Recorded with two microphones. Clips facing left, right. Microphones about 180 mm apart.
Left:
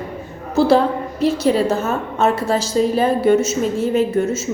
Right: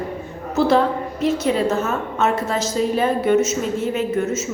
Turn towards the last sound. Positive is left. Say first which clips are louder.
# left 4 dB
turn(degrees=35)  # may be behind; listen again after turning